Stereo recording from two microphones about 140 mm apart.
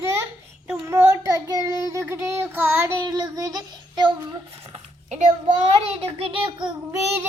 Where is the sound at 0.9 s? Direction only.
20° right (ahead or behind).